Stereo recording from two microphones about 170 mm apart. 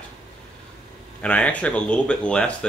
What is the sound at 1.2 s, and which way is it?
Speech, 10° left (ahead or behind).